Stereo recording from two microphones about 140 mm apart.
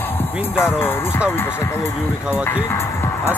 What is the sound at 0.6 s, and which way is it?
Speech, 15° left (ahead or behind).